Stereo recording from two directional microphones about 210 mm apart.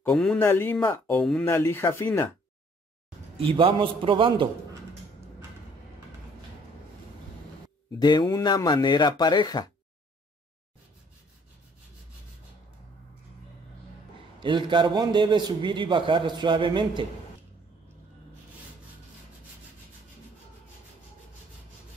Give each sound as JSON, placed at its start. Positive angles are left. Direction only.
{"t": 0.0, "sound": "speech", "side_deg": 5}
{"t": 3.3, "sound": "a man's voice", "side_deg": -25}
{"t": 8.0, "sound": "speech", "side_deg": 20}
{"t": 14.4, "sound": "a man's voice", "side_deg": -20}